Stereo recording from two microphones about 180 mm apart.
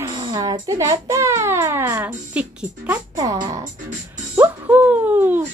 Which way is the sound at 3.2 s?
20° right (ahead or behind).